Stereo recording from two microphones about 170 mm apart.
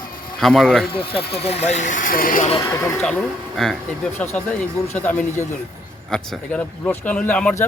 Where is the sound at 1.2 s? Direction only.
70° left (ahead or behind).